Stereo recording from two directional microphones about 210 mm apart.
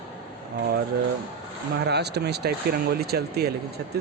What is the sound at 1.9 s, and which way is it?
Speech, 50° right (ahead or behind).